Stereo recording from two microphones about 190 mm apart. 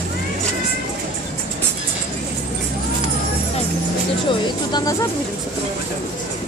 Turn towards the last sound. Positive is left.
turn(degrees=20)  # may be behind; listen again after turning